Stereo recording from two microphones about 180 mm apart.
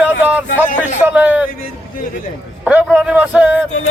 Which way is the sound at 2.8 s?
5° right (ahead or behind).